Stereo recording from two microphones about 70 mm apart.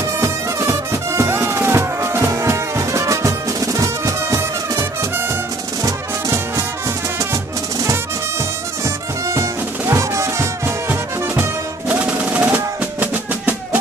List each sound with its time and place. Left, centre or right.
0.2 s music: right
5.9 s music: right
8.8 s music: right
11.9 s music: centre